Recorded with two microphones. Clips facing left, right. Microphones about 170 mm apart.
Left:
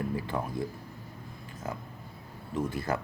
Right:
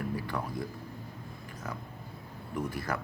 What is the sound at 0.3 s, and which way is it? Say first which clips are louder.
Speech: left 4 dB; 25° left (ahead or behind).